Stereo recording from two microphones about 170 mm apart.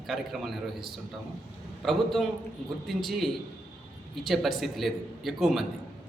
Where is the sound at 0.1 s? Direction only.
Centre (ahead or behind).